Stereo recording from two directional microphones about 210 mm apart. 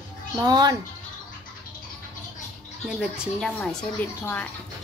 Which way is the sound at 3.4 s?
5° left (ahead or behind).